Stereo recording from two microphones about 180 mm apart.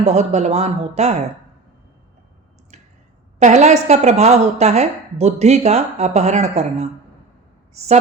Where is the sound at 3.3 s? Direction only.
40° right (ahead or behind).